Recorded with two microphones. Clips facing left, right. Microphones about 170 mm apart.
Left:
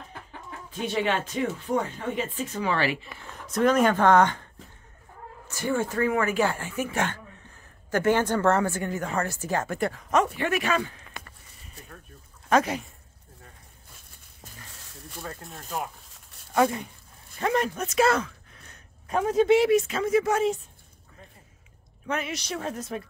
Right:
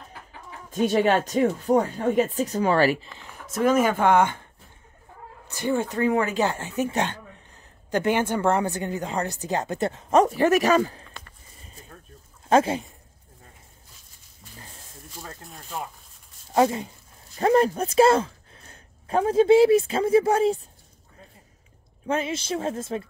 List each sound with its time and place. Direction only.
0.7 s speech: 45° right (ahead or behind)
3.5 s speech: 5° right (ahead or behind)
5.5 s speech: 15° right (ahead or behind)
10.2 s speech: 40° right (ahead or behind)
12.4 s speech: 25° right (ahead or behind)
16.5 s speech: 25° right (ahead or behind)
22.0 s speech: 30° right (ahead or behind)